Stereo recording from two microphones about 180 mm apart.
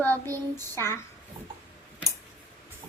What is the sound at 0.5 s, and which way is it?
Speech, 15° left (ahead or behind).